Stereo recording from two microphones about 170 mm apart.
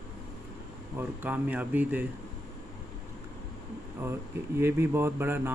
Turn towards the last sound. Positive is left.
turn(degrees=-10)  # may be behind; listen again after turning